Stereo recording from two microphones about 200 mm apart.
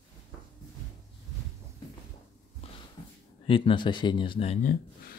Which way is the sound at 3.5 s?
25° left (ahead or behind).